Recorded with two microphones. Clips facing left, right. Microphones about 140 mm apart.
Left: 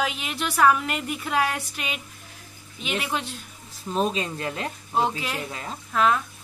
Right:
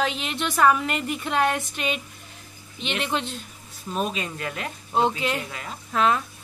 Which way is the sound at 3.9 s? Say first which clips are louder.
Left 3 dB; 30° left (ahead or behind).